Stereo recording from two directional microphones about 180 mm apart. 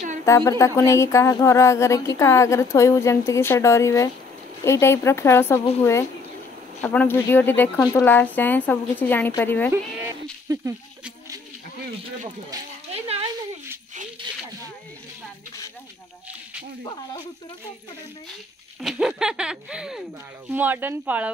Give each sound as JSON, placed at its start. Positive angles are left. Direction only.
{"t": 0.2, "sound": "music", "side_deg": 15}
{"t": 10.5, "sound": "speech", "side_deg": -20}
{"t": 18.8, "sound": "speech", "side_deg": -5}